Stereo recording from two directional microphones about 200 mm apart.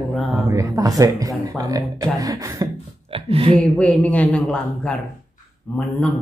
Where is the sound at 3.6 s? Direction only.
5° left (ahead or behind).